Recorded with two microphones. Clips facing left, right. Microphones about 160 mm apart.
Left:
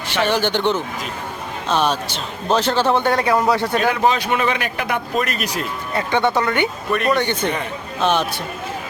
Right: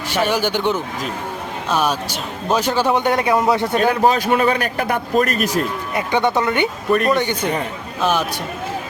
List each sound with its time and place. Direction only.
0.1 s speech: 10° right (ahead or behind)
3.8 s speech: 45° right (ahead or behind)
5.9 s speech: 15° right (ahead or behind)